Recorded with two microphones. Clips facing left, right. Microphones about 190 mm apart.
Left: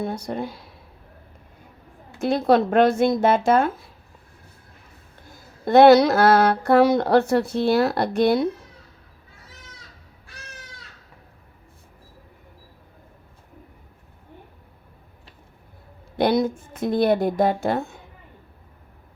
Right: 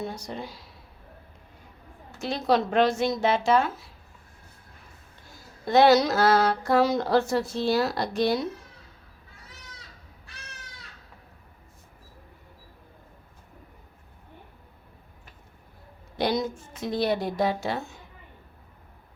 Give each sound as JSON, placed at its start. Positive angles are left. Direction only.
{"t": 0.0, "sound": "speech", "side_deg": 55}
{"t": 2.1, "sound": "a woman's voice", "side_deg": 55}
{"t": 5.3, "sound": "speech", "side_deg": 55}
{"t": 16.1, "sound": "a woman's voice", "side_deg": 55}